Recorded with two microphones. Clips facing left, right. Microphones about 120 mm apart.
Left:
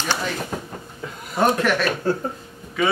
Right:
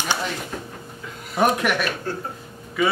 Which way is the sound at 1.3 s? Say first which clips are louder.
Left 1 dB; 10° right (ahead or behind).